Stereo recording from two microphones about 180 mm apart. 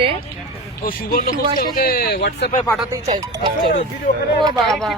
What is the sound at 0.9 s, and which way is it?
Speech, 55° left (ahead or behind).